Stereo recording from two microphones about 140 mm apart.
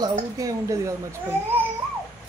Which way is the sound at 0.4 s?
25° right (ahead or behind).